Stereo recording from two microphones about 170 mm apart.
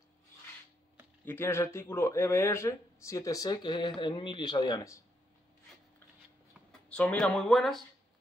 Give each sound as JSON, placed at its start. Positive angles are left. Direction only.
{"t": 1.2, "sound": "speech", "side_deg": 15}
{"t": 6.7, "sound": "speech", "side_deg": 5}